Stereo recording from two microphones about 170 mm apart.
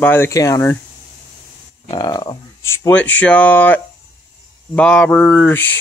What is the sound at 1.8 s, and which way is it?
Speech, 25° left (ahead or behind).